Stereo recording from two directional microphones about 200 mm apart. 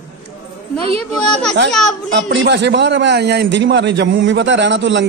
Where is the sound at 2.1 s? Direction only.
60° right (ahead or behind).